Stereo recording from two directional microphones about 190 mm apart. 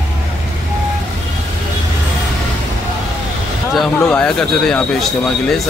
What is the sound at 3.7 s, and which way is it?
Speech, centre (ahead or behind).